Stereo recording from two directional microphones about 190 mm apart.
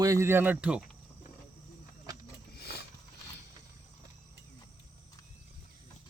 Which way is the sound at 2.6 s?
55° left (ahead or behind).